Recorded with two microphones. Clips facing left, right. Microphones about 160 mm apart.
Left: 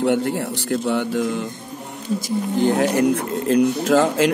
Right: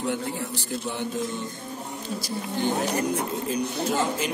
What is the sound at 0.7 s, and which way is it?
Speech, 70° left (ahead or behind).